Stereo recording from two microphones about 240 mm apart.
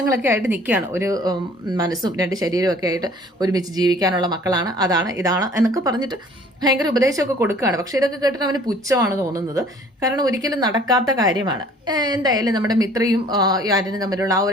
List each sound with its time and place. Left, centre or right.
0.1 s speech: centre